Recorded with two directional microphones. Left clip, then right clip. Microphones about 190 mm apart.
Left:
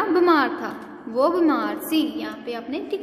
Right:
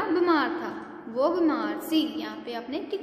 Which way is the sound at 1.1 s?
25° left (ahead or behind).